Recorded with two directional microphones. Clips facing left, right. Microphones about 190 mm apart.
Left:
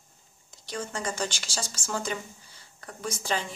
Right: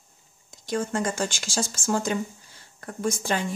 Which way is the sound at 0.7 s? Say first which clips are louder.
Right 7 dB; 50° right (ahead or behind).